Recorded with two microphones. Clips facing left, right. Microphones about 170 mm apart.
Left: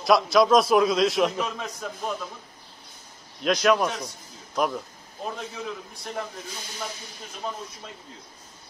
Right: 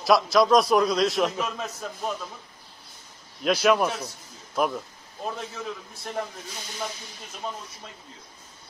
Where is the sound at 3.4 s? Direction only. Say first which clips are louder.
Even; 5° right (ahead or behind).